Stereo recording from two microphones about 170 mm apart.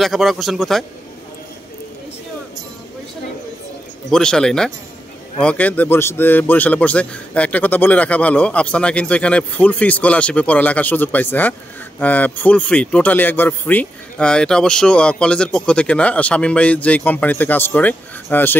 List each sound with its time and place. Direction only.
0.0 s a man's voice: centre (ahead or behind)
4.1 s a man's voice: 5° left (ahead or behind)